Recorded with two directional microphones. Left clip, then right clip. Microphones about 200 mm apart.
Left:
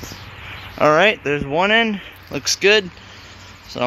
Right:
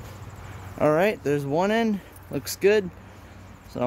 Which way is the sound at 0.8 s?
10° left (ahead or behind).